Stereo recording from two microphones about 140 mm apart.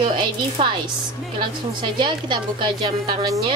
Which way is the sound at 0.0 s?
35° right (ahead or behind).